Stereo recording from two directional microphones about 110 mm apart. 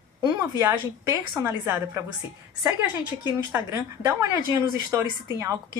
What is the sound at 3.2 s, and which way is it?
A woman's voice, 30° right (ahead or behind).